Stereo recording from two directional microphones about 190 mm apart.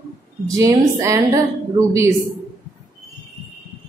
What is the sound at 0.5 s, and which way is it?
A woman's voice, 15° right (ahead or behind).